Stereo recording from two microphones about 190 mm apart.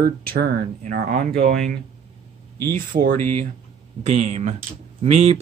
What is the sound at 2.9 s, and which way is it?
Speech, 45° right (ahead or behind).